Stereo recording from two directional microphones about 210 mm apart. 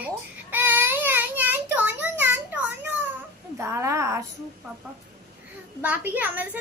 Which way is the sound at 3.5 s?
15° right (ahead or behind).